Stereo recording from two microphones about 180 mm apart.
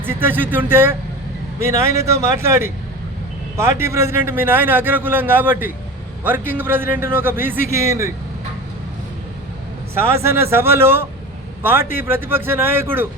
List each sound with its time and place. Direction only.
0.0 s a man's voice: 10° right (ahead or behind)
9.9 s a man's voice: 15° right (ahead or behind)